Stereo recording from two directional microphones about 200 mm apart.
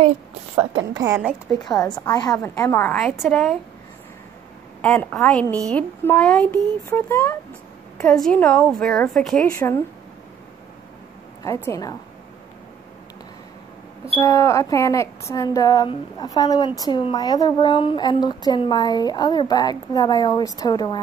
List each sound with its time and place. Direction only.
1.0 s speech: 15° right (ahead or behind)
1.6 s a woman's voice: 20° left (ahead or behind); by 3.5 s 5° left (ahead or behind)
4.8 s a woman's voice: 5° left (ahead or behind)
9.6 s speech: 15° left (ahead or behind)
11.4 s speech: 15° left (ahead or behind)
14.1 s speech: 15° left (ahead or behind)